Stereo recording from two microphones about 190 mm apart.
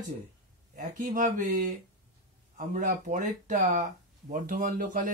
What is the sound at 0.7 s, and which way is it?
Speech, 45° right (ahead or behind).